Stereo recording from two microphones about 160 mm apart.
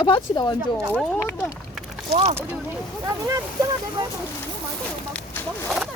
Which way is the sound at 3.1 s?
20° right (ahead or behind).